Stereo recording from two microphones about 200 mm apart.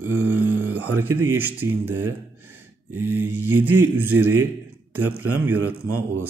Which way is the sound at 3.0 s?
90° right.